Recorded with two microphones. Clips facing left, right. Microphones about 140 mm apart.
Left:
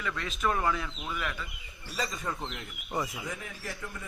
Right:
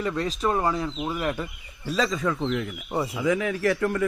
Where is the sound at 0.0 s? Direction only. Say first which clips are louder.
Right 7 dB; 35° right (ahead or behind).